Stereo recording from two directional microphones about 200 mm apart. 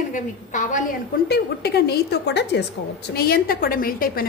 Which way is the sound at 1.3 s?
50° left (ahead or behind).